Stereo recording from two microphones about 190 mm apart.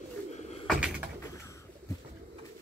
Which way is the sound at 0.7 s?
5° right (ahead or behind).